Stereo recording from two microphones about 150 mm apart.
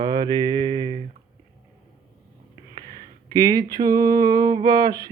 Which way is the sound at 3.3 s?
25° right (ahead or behind).